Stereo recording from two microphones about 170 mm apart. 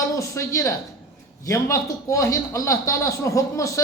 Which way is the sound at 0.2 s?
20° left (ahead or behind).